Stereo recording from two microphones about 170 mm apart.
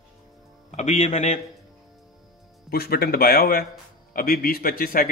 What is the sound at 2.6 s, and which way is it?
Speech, 65° left (ahead or behind).